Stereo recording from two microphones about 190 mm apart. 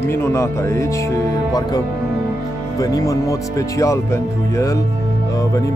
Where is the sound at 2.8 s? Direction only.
20° left (ahead or behind).